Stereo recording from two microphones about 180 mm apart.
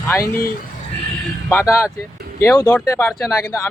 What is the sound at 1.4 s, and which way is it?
A man's voice, 15° left (ahead or behind).